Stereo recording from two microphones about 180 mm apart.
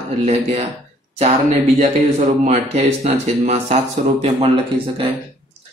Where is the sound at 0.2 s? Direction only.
40° right (ahead or behind).